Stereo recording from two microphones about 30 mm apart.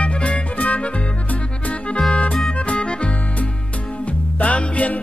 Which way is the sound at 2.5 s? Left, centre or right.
Left.